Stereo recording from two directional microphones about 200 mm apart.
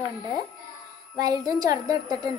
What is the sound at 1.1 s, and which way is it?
A woman's voice, 20° right (ahead or behind).